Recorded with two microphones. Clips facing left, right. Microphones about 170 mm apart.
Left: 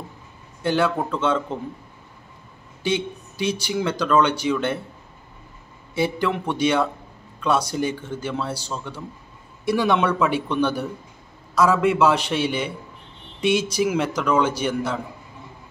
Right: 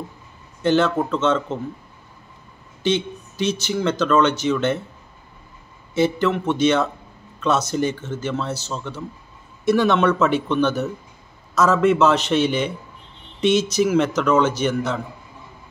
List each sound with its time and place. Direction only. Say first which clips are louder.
0.6 s speech: right 3 dB; 10° left (ahead or behind)
2.8 s speech: right 3 dB; 10° left (ahead or behind)
5.9 s speech: right 4 dB; 10° left (ahead or behind)